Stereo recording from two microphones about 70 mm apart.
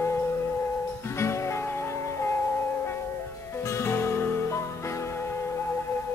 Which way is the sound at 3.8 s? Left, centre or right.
Left.